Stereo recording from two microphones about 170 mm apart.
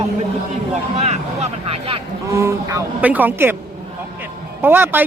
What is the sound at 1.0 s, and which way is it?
Speech, 40° right (ahead or behind).